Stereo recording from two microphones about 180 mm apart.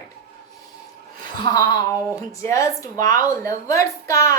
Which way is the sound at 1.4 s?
20° left (ahead or behind).